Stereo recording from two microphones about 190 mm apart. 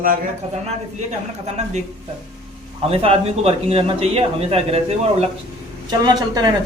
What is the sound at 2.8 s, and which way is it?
A man's voice, 30° right (ahead or behind).